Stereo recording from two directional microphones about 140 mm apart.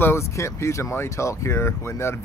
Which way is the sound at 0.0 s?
20° left (ahead or behind).